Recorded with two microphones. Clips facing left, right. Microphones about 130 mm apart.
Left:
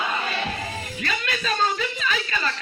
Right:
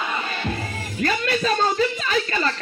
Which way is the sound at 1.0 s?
40° right (ahead or behind).